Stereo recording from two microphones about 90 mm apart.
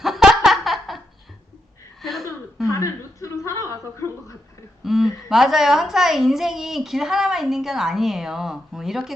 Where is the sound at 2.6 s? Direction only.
35° left (ahead or behind).